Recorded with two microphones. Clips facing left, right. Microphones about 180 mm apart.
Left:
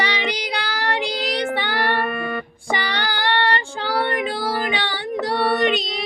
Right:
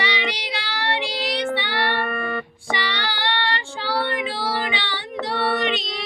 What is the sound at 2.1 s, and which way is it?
Music, 10° left (ahead or behind).